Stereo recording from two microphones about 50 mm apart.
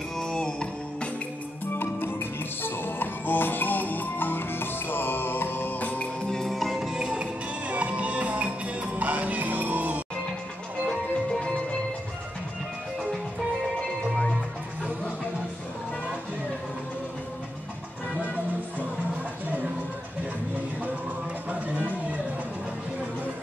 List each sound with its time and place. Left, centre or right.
0.2 s music: centre
1.7 s music: left
6.2 s music: centre
6.9 s music: centre
11.3 s music: centre
21.5 s music: right